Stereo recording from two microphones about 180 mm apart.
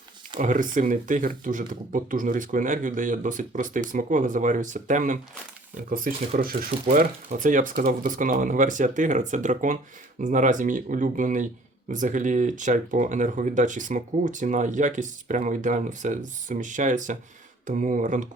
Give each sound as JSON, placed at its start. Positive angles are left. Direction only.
{"t": 0.3, "sound": "speech", "side_deg": -45}